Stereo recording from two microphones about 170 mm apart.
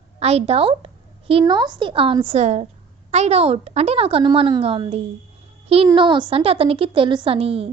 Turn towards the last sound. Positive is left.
turn(degrees=-35)  # may be behind; listen again after turning